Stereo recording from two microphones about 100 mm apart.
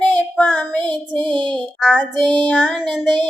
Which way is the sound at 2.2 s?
15° left (ahead or behind).